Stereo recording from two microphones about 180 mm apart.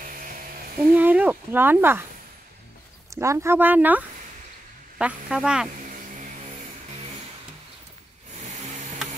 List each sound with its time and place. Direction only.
0.0 s electric shaver: 50° right (ahead or behind)
0.9 s a sound: 10° right (ahead or behind)
3.1 s speech: 15° right (ahead or behind)
5.9 s vehicle: 45° right (ahead or behind)